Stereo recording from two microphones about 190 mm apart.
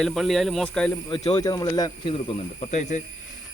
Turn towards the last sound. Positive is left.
turn(degrees=40)  # may be behind; listen again after turning